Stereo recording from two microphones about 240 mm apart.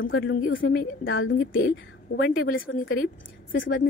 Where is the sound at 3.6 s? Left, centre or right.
Left.